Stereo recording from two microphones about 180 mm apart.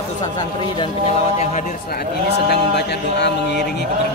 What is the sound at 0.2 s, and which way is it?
Speech, 25° left (ahead or behind).